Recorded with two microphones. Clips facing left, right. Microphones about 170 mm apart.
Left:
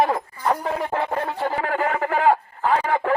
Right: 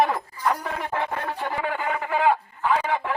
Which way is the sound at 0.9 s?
40° left (ahead or behind).